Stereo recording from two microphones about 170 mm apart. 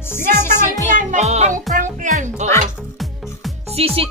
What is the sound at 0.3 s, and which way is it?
Music, 15° left (ahead or behind).